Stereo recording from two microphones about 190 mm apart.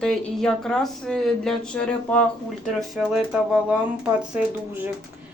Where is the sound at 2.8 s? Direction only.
5° right (ahead or behind).